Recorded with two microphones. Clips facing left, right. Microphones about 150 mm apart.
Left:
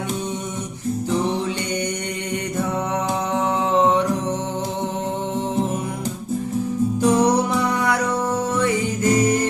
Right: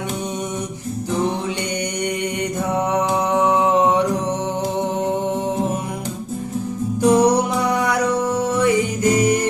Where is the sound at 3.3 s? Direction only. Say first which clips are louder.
Right 4 dB; 15° right (ahead or behind).